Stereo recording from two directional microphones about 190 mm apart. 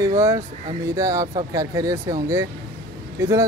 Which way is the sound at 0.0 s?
15° right (ahead or behind).